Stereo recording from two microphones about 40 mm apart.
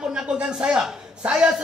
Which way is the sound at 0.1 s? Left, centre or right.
Centre.